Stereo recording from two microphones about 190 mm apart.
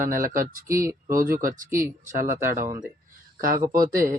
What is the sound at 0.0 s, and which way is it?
Speech, 45° right (ahead or behind).